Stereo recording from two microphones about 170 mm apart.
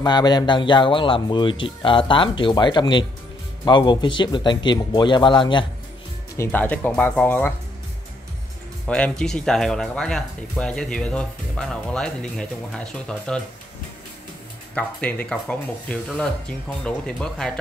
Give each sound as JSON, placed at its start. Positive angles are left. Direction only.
{"t": 0.0, "sound": "speech", "side_deg": 25}
{"t": 6.3, "sound": "speech", "side_deg": 15}
{"t": 8.8, "sound": "speech", "side_deg": 5}
{"t": 14.8, "sound": "speech", "side_deg": 10}